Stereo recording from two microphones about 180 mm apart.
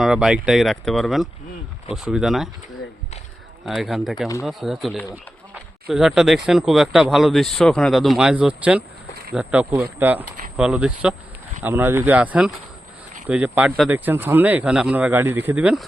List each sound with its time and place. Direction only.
0.0 s speech: centre (ahead or behind)
3.7 s speech: centre (ahead or behind)